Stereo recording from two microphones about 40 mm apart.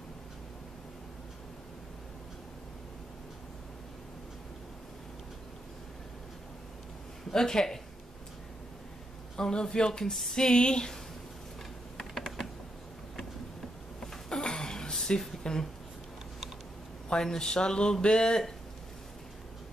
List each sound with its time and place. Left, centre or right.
7.2 s speech: centre
9.4 s speech: centre
12.0 s typing: centre
13.9 s a sound: centre
15.0 s speech: centre
17.1 s speech: centre